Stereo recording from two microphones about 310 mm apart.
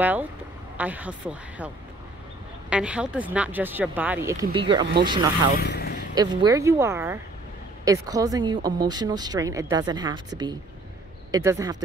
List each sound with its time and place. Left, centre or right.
0.0 s speech: centre
2.7 s speech: centre
5.6 s vehicle: left
6.1 s speech: centre